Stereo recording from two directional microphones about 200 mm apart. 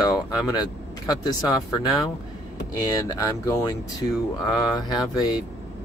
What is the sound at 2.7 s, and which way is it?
Speech, 15° left (ahead or behind).